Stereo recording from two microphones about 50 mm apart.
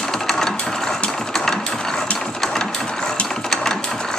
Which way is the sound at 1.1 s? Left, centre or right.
Centre.